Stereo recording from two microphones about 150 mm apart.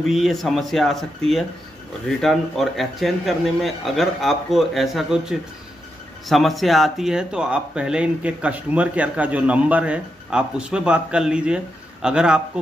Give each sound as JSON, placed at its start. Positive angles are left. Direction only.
{"t": 0.0, "sound": "speech", "side_deg": 0}
{"t": 2.0, "sound": "speech", "side_deg": 0}